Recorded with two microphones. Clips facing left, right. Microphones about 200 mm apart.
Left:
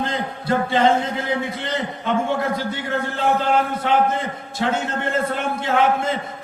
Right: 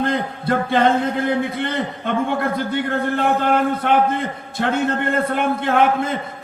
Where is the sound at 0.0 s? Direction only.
55° right (ahead or behind).